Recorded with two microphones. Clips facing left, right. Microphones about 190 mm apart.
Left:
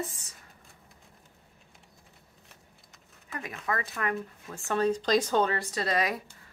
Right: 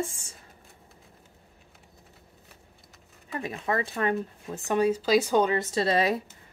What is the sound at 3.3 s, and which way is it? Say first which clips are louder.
A woman's voice: right 5 dB; 30° right (ahead or behind).